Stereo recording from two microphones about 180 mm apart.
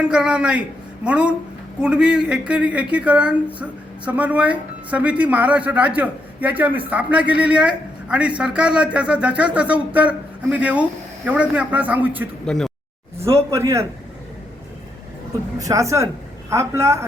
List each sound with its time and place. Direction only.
0.0 s speech: 5° right (ahead or behind)
12.5 s speech: 5° left (ahead or behind)
13.2 s speech: 15° right (ahead or behind)
15.5 s speech: 20° right (ahead or behind)